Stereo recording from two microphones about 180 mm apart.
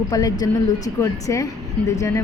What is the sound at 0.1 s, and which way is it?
A woman's voice, 20° left (ahead or behind).